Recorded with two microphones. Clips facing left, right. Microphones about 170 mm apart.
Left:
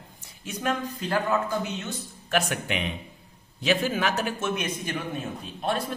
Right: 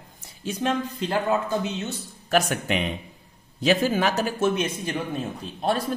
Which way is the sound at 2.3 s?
40° right (ahead or behind).